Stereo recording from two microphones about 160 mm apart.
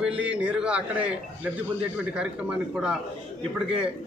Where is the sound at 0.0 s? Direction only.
10° right (ahead or behind).